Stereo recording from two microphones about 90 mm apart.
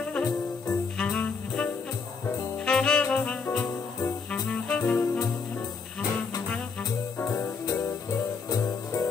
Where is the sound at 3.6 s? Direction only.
40° left (ahead or behind).